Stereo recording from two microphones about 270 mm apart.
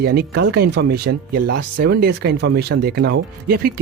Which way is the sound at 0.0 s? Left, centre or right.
Right.